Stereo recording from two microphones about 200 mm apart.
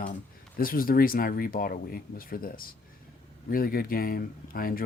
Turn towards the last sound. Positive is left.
turn(degrees=45)  # may be behind; listen again after turning